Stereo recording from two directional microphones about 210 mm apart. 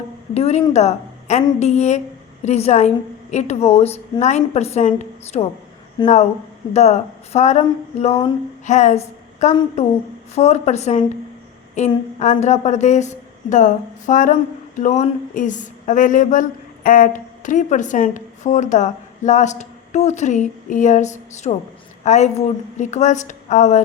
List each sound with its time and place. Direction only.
0.3 s a woman's voice: 30° left (ahead or behind)
6.0 s speech: 20° left (ahead or behind)
6.7 s a woman's voice: 35° left (ahead or behind)